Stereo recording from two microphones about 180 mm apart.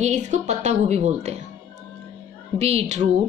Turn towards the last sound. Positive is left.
turn(degrees=-40)  # may be behind; listen again after turning